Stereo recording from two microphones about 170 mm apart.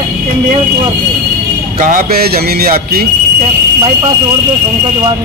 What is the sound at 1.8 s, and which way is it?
A man's voice, 55° right (ahead or behind).